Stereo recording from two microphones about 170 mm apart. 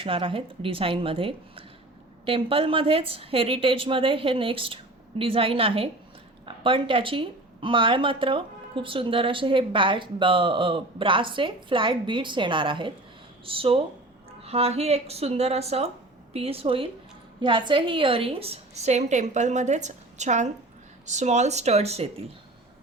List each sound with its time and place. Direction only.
0.0 s a woman's voice: 30° right (ahead or behind)